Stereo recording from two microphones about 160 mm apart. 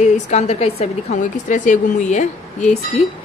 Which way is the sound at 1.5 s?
55° left (ahead or behind).